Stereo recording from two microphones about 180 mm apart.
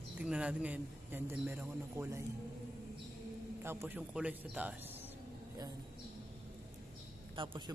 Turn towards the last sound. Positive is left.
turn(degrees=-25)  # may be behind; listen again after turning